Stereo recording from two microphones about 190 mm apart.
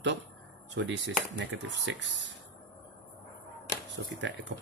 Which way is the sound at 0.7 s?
75° right (ahead or behind).